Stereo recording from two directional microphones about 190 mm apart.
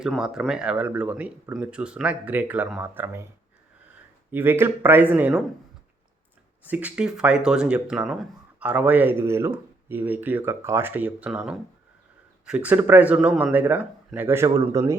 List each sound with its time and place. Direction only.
0.0 s speech: centre (ahead or behind)
4.3 s speech: 10° right (ahead or behind)
6.7 s speech: 10° right (ahead or behind)